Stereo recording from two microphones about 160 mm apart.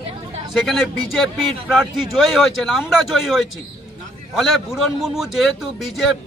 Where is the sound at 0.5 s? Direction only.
Centre (ahead or behind).